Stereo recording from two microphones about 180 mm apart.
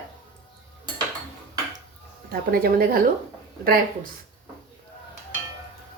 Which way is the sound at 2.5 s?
55° right (ahead or behind).